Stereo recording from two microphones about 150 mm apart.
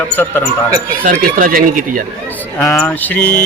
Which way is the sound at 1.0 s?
65° right (ahead or behind).